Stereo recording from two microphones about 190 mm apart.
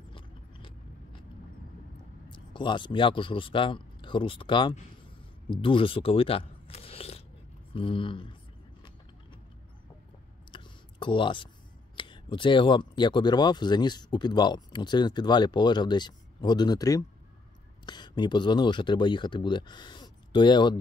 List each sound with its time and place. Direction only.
0.1 s vehicle: 25° left (ahead or behind)
2.2 s speech: 25° left (ahead or behind)
5.5 s crunch: 25° left (ahead or behind)
7.7 s speech: 25° left (ahead or behind)
10.5 s a sound: 25° left (ahead or behind)
11.9 s speech: 25° left (ahead or behind)